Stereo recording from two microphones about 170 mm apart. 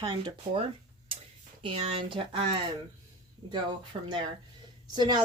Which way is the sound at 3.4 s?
25° right (ahead or behind).